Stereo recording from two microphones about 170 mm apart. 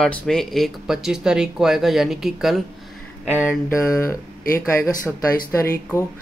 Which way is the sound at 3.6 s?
15° left (ahead or behind).